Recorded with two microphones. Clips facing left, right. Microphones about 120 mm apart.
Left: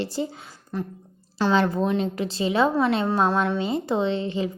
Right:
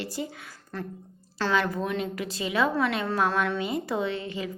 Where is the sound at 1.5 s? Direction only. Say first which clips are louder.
Left 5 dB; 30° left (ahead or behind).